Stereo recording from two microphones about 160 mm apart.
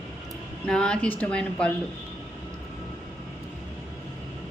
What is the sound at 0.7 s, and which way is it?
A woman's voice, 5° left (ahead or behind).